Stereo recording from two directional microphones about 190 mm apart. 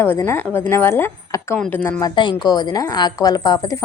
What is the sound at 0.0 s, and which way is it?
A woman's voice, 10° left (ahead or behind).